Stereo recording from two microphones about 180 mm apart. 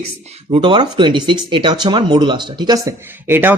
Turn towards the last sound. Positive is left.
turn(degrees=-10)  # may be behind; listen again after turning